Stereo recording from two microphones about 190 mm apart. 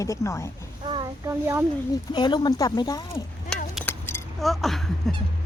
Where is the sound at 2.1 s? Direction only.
25° left (ahead or behind).